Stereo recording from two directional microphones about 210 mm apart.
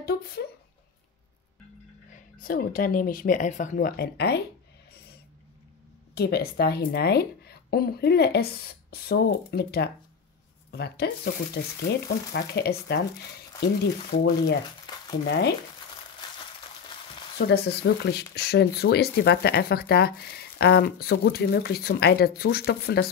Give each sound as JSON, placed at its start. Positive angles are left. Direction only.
{"t": 0.0, "sound": "a sound", "side_deg": 45}
{"t": 2.4, "sound": "speech", "side_deg": 45}
{"t": 6.1, "sound": "speech", "side_deg": 50}
{"t": 14.2, "sound": "speech", "side_deg": 50}
{"t": 17.4, "sound": "speech", "side_deg": 50}